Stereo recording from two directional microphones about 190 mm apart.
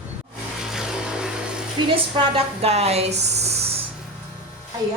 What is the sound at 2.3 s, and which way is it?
Speech, 35° right (ahead or behind).